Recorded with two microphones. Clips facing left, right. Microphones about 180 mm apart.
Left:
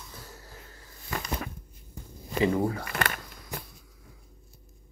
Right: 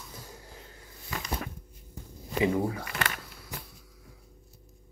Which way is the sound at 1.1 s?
55° left (ahead or behind).